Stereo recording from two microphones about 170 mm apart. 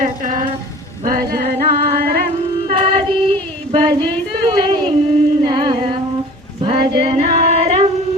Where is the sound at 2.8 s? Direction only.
35° right (ahead or behind).